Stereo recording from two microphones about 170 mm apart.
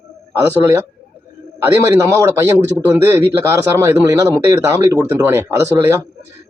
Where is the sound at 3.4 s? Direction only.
20° right (ahead or behind).